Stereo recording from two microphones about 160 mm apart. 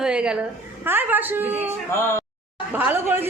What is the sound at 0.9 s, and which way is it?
Speech, 10° right (ahead or behind).